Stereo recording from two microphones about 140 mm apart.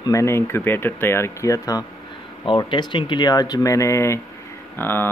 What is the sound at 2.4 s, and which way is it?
Speech, 35° left (ahead or behind).